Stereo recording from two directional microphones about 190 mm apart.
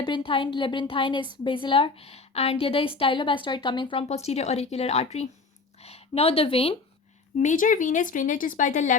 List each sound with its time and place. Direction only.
0.0 s a woman's voice: 25° left (ahead or behind)
7.3 s speech: 45° left (ahead or behind)